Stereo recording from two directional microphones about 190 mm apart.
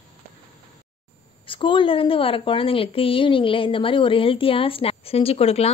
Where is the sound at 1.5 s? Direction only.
25° left (ahead or behind).